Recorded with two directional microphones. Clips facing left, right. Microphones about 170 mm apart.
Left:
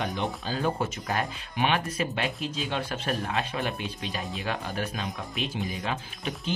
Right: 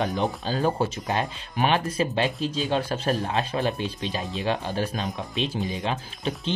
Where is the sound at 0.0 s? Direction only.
35° right (ahead or behind).